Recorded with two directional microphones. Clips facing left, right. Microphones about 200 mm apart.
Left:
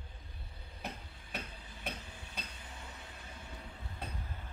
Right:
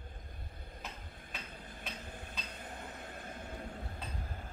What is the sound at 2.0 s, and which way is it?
Vehicle, 50° right (ahead or behind).